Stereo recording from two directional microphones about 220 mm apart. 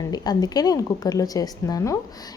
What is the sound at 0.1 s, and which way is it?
A woman's voice, 20° left (ahead or behind).